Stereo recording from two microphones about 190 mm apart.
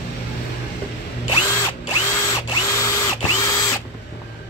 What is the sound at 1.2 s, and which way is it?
Drill, 20° left (ahead or behind).